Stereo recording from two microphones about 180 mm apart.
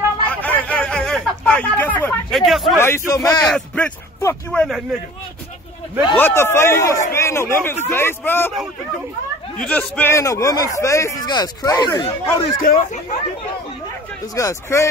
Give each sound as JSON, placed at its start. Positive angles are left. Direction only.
{"t": 0.3, "sound": "a sound", "side_deg": 10}
{"t": 2.8, "sound": "a man's voice", "side_deg": 15}
{"t": 3.5, "sound": "a man's voice", "side_deg": 5}
{"t": 6.1, "sound": "a man's voice", "side_deg": 10}
{"t": 9.6, "sound": "a man's voice", "side_deg": 10}
{"t": 14.3, "sound": "a man's voice", "side_deg": 15}